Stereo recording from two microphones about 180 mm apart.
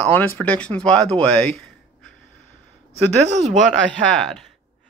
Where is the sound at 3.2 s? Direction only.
40° right (ahead or behind).